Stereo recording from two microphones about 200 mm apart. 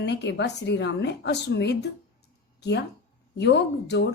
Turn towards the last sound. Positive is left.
turn(degrees=60)  # may be behind; listen again after turning